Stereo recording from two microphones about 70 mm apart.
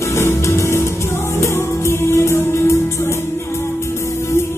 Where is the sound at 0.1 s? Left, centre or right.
Left.